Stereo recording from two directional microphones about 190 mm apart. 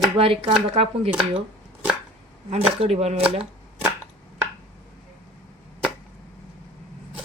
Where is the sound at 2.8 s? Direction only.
35° right (ahead or behind).